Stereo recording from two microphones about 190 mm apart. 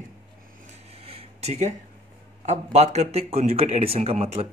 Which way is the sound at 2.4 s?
35° right (ahead or behind).